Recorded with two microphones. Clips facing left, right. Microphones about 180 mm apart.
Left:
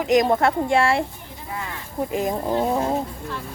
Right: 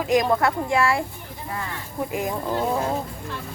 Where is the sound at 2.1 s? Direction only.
25° left (ahead or behind).